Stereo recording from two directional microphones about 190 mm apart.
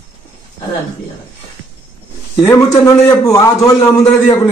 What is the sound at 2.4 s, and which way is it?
A man's voice, 15° left (ahead or behind).